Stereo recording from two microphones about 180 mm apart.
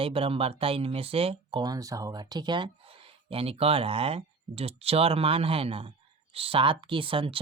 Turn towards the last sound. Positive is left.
turn(degrees=-30)  # may be behind; listen again after turning